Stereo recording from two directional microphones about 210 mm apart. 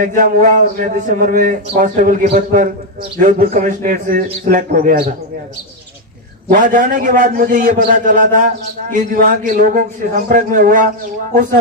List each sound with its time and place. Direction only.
0.0 s a man's voice: 40° right (ahead or behind)
6.5 s a man's voice: 40° right (ahead or behind)